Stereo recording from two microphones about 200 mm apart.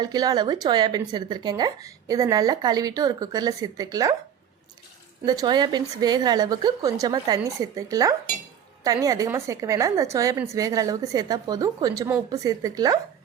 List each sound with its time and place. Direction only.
0.0 s speech: 20° right (ahead or behind)
5.2 s a woman's voice: 20° right (ahead or behind)